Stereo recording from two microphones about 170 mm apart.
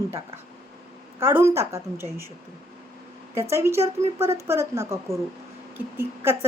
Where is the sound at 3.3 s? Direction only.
15° right (ahead or behind).